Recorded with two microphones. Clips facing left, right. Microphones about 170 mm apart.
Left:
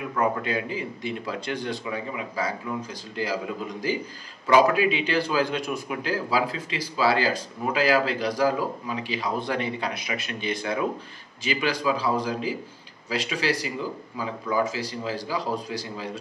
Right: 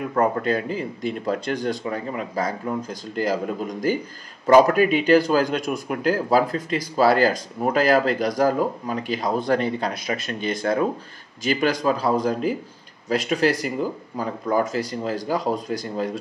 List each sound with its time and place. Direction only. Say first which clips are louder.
0.1 s speech: right 4 dB; 45° right (ahead or behind)